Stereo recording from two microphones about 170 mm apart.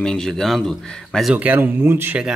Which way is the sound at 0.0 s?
5° left (ahead or behind).